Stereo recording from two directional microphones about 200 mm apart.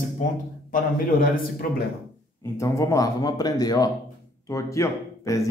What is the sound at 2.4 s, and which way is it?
Speech, 15° left (ahead or behind).